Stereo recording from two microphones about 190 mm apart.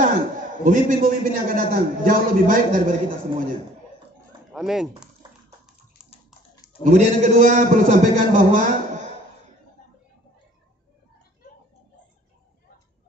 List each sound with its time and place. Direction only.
0.7 s a man's voice: 45° right (ahead or behind)
4.5 s speech: centre (ahead or behind)
6.8 s a man's voice: 40° right (ahead or behind)